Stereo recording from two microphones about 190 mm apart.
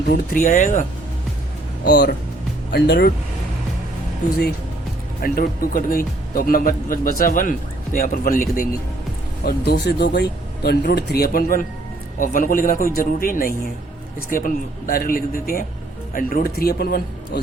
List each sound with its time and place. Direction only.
0.1 s speech: 45° left (ahead or behind)
1.8 s speech: 60° left (ahead or behind)
5.2 s speech: 45° left (ahead or behind)